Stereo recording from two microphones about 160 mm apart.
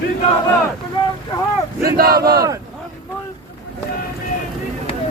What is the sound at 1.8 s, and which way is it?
Speech, 70° right (ahead or behind).